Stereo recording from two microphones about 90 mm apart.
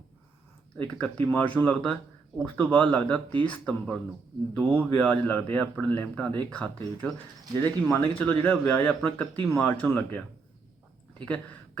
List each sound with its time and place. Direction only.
0.8 s a man's voice: 15° left (ahead or behind)